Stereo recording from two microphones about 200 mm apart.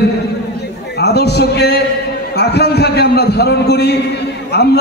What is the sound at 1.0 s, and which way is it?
A man's voice, 55° left (ahead or behind).